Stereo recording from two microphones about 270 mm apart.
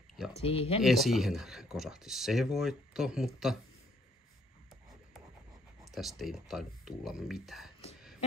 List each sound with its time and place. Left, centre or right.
0.1 s a sound: centre
0.4 s speech: left
0.8 s speech: centre
5.9 s speech: centre